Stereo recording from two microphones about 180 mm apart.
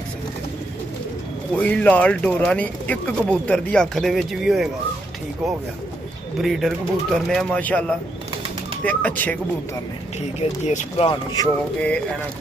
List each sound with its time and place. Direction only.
1.6 s speech: 5° left (ahead or behind)
6.3 s speech: centre (ahead or behind)
10.6 s speech: 40° left (ahead or behind)
11.4 s speech: 5° left (ahead or behind)